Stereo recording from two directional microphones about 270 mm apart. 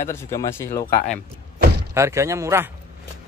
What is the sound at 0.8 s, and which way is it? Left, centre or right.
Speech, left.